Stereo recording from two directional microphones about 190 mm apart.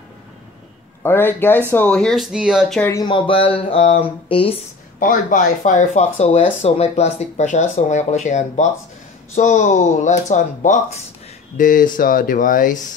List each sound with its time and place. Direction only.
1.0 s speech: 10° left (ahead or behind)
2.8 s speech: 15° left (ahead or behind)
3.1 s speech: 25° left (ahead or behind)
5.0 s speech: 40° left (ahead or behind)